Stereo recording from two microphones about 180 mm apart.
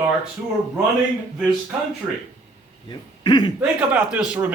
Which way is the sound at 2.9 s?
25° left (ahead or behind).